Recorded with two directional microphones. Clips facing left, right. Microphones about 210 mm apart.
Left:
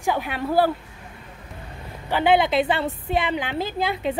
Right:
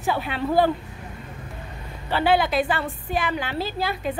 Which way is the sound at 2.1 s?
20° left (ahead or behind).